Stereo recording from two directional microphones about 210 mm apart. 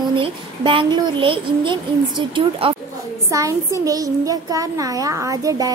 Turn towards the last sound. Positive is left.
turn(degrees=-15)  # may be behind; listen again after turning